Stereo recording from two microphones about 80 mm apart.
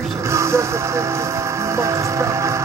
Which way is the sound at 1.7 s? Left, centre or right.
Right.